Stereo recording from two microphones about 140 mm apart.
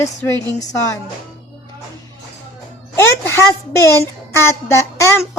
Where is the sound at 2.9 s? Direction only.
20° left (ahead or behind).